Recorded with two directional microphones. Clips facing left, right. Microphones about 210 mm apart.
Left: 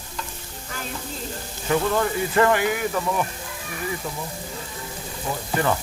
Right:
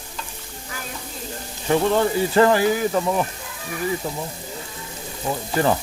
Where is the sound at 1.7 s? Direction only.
30° right (ahead or behind).